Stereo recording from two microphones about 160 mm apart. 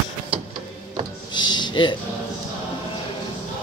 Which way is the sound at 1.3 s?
30° left (ahead or behind).